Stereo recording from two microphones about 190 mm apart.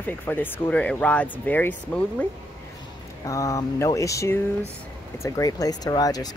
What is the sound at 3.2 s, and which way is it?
Speech, 15° left (ahead or behind).